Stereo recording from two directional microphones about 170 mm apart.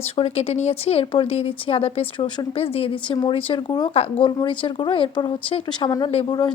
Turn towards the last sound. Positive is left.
turn(degrees=25)  # may be behind; listen again after turning